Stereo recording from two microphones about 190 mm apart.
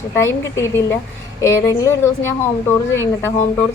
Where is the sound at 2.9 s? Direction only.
15° left (ahead or behind).